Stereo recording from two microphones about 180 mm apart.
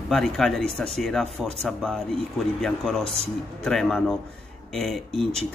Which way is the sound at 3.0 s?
35° right (ahead or behind).